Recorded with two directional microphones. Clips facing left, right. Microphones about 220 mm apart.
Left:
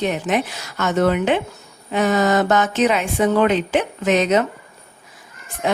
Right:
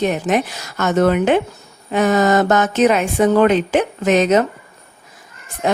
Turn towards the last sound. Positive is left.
turn(degrees=-45)  # may be behind; listen again after turning